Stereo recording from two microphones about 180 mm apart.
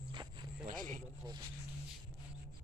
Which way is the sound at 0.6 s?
50° right (ahead or behind).